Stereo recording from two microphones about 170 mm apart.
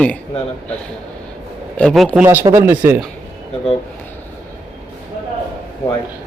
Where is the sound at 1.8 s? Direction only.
5° left (ahead or behind).